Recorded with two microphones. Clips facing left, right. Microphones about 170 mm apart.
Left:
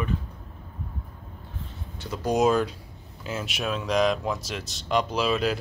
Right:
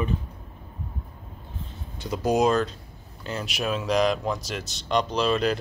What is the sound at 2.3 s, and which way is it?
Speech, 5° left (ahead or behind).